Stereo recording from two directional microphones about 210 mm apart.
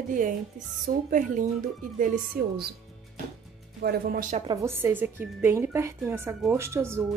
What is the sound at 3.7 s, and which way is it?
Speech, 50° right (ahead or behind).